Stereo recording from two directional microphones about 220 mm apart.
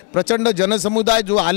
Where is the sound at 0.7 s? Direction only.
30° left (ahead or behind).